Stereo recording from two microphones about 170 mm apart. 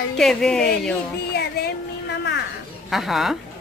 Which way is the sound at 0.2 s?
5° left (ahead or behind).